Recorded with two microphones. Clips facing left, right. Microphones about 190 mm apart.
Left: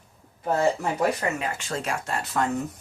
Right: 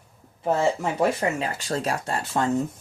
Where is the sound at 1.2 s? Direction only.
35° right (ahead or behind).